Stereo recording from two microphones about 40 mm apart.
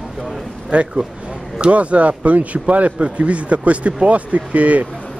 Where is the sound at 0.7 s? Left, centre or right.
Right.